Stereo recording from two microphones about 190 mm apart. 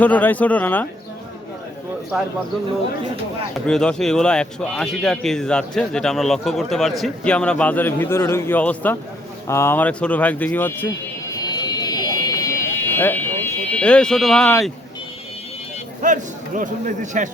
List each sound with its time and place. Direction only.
0.0 s speech: 10° left (ahead or behind)
3.5 s a man's voice: 5° left (ahead or behind)
11.3 s fire alarm: 20° left (ahead or behind)
13.7 s a man's voice: 5° left (ahead or behind)
16.0 s a man's voice: 40° right (ahead or behind)